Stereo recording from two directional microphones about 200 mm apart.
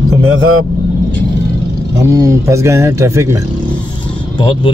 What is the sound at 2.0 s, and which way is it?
Speech, 15° right (ahead or behind).